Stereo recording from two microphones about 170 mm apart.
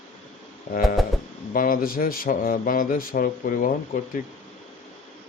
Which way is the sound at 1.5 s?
55° left (ahead or behind).